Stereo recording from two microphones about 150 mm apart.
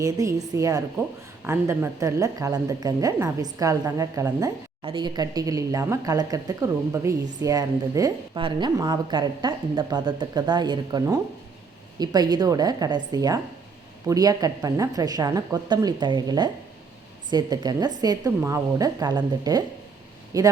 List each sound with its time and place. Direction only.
0.0 s a woman's voice: 20° right (ahead or behind)
8.4 s a woman's voice: 30° right (ahead or behind)